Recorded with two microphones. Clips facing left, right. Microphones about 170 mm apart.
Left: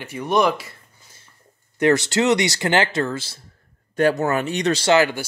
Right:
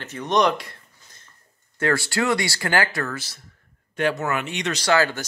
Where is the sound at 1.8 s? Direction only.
20° left (ahead or behind).